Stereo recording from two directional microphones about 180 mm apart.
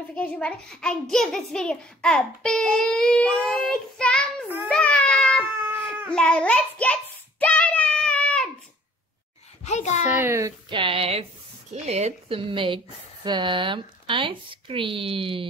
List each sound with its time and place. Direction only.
0.1 s a child's voice: 5° left (ahead or behind)
4.6 s a sound: 5° left (ahead or behind)
5.4 s cat: 10° right (ahead or behind)
6.1 s child singing: 5° left (ahead or behind)
9.7 s a child's voice: 40° left (ahead or behind)
10.1 s a woman's voice: 15° right (ahead or behind)
10.7 s speech: 30° right (ahead or behind)